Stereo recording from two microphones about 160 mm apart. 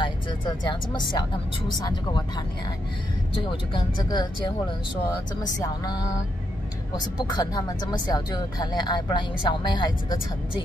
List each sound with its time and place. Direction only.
0.0 s music: 30° left (ahead or behind)
1.8 s speech: 25° left (ahead or behind)
3.7 s speech: 25° left (ahead or behind)
7.0 s speech: 25° left (ahead or behind)